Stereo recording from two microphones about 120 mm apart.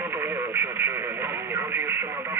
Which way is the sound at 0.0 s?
20° right (ahead or behind).